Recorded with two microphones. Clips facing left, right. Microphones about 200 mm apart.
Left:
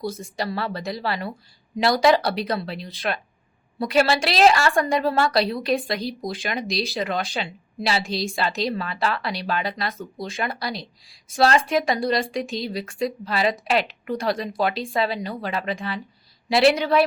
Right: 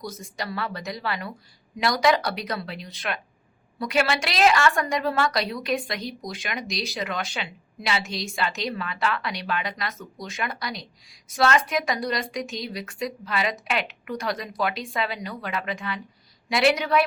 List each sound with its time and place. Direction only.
0.0 s a woman's voice: 30° left (ahead or behind)